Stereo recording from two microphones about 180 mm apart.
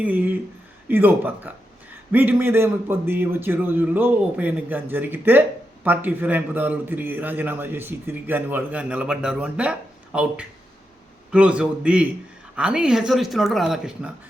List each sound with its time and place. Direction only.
0.0 s a man's voice: 10° right (ahead or behind)